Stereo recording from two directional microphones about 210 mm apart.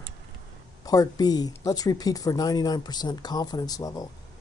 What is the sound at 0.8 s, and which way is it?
Speech, 15° left (ahead or behind).